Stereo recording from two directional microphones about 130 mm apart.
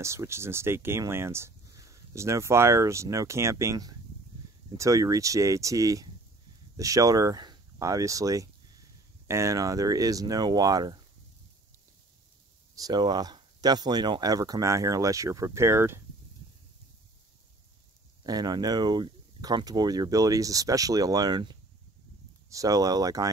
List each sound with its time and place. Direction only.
0.0 s speech: 20° right (ahead or behind)
12.7 s speech: 30° right (ahead or behind)
18.2 s speech: 30° right (ahead or behind)